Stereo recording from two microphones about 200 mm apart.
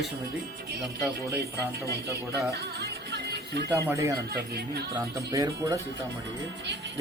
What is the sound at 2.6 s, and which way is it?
Music, 55° right (ahead or behind).